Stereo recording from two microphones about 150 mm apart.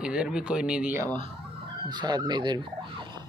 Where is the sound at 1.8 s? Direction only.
30° right (ahead or behind).